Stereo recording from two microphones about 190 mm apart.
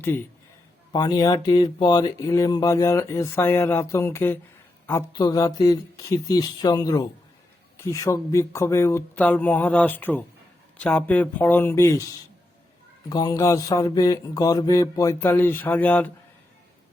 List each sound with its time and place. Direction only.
0.0 s speech: 10° left (ahead or behind)
0.9 s speech: 20° left (ahead or behind)
13.1 s speech: 20° left (ahead or behind)